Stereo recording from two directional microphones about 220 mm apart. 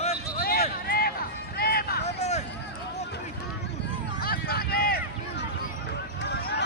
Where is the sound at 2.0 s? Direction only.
30° left (ahead or behind).